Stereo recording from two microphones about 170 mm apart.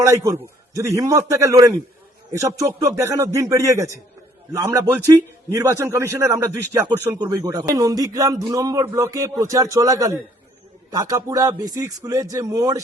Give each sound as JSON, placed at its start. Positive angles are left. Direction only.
{"t": 0.0, "sound": "a man's voice", "side_deg": -15}